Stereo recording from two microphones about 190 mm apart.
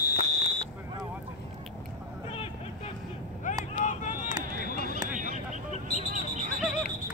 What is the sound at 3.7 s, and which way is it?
Vehicle, 45° left (ahead or behind).